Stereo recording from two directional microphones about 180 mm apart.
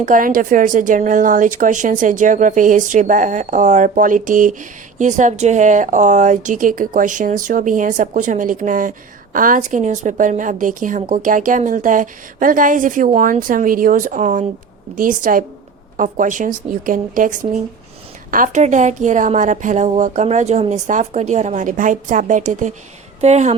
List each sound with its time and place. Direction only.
0.0 s a woman's voice: 50° right (ahead or behind)